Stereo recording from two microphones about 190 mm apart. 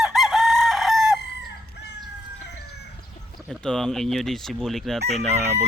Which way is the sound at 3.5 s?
5° left (ahead or behind).